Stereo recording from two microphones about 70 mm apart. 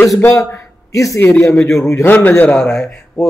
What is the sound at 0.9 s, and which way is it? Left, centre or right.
Speech, left.